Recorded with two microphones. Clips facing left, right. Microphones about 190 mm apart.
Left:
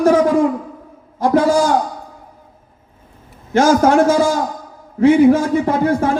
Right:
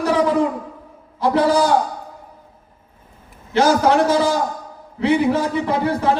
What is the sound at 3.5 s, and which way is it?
A man's voice, 45° left (ahead or behind).